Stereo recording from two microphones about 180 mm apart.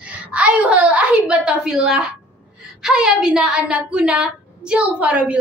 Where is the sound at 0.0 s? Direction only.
5° right (ahead or behind).